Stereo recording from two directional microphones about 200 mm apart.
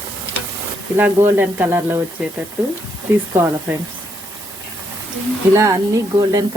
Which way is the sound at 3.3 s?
10° right (ahead or behind).